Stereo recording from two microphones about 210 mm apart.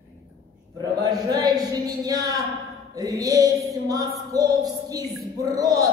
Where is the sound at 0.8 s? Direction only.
20° right (ahead or behind).